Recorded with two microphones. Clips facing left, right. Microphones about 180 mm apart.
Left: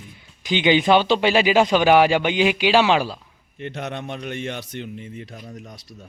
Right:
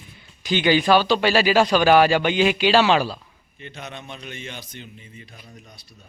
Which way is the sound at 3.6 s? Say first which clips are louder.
Left 7 dB; 65° left (ahead or behind).